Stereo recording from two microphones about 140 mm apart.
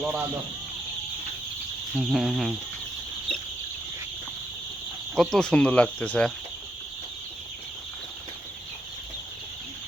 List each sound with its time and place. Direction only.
0.0 s speech: 15° right (ahead or behind)
2.0 s a sound: 5° right (ahead or behind)
5.1 s speech: 5° left (ahead or behind)